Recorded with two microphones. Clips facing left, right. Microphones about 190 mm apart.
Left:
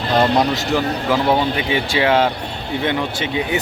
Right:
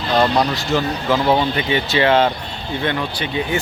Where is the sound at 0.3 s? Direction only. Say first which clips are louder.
Left 1 dB; 20° left (ahead or behind).